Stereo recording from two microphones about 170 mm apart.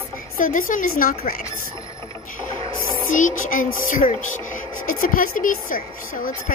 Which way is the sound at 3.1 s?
50° left (ahead or behind).